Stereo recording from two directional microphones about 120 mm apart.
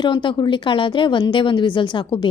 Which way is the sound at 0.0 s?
40° left (ahead or behind).